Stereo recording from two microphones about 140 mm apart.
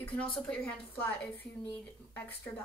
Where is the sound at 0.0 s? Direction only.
10° left (ahead or behind).